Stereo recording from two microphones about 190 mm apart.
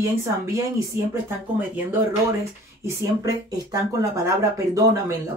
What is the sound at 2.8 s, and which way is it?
Speech, 15° right (ahead or behind).